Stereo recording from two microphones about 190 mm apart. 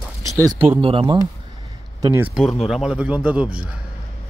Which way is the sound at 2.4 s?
Centre (ahead or behind).